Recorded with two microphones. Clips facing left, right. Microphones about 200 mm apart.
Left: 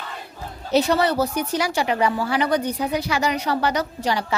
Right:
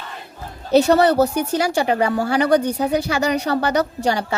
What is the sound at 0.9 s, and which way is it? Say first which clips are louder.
Speech: right 5 dB; 60° right (ahead or behind).